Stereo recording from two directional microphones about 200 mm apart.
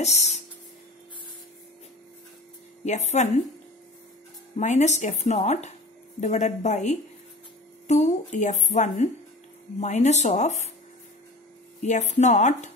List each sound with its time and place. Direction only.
0.0 s a woman's voice: 35° left (ahead or behind)
2.8 s a woman's voice: 35° left (ahead or behind)
4.6 s a woman's voice: 35° left (ahead or behind)
11.8 s a woman's voice: 35° left (ahead or behind)